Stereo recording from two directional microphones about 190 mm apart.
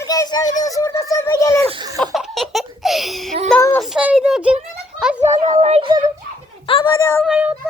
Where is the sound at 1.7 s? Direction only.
20° right (ahead or behind).